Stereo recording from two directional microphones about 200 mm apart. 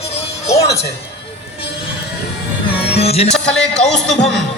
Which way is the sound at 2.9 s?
30° left (ahead or behind).